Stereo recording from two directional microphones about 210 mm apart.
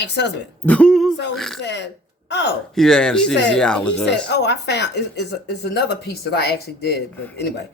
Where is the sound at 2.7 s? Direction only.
Centre (ahead or behind).